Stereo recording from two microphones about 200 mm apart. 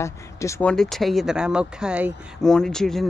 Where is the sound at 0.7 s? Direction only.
Centre (ahead or behind).